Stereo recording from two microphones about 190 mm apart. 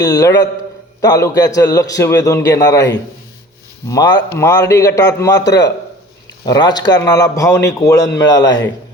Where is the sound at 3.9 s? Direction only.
20° left (ahead or behind).